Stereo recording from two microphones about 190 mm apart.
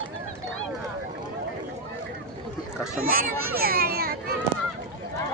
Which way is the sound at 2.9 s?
50° right (ahead or behind).